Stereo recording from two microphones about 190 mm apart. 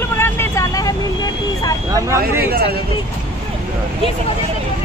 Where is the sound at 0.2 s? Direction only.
15° left (ahead or behind).